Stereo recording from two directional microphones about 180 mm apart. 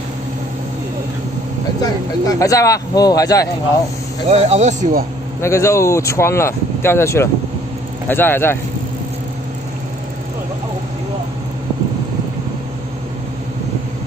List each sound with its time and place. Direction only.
1.8 s speech: 20° left (ahead or behind)
4.3 s speech: 35° right (ahead or behind)
5.4 s speech: 15° left (ahead or behind)